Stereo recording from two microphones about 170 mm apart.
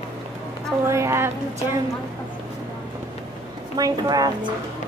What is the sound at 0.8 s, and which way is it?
Speech, 15° right (ahead or behind).